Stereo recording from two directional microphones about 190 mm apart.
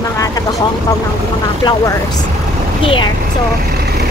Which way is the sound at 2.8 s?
25° left (ahead or behind).